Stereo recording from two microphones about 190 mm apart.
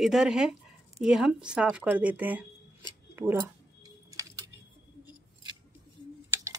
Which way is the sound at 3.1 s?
10° right (ahead or behind).